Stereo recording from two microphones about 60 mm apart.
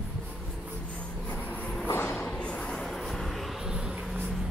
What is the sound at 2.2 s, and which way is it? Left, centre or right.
Vehicle, centre.